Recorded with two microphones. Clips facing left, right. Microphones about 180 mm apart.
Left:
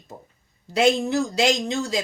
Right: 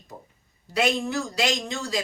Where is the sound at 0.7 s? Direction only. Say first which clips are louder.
Left 5 dB; 25° left (ahead or behind).